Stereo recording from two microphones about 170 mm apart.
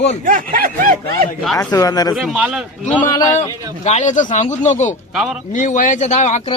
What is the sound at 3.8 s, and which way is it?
A man's voice, 45° left (ahead or behind).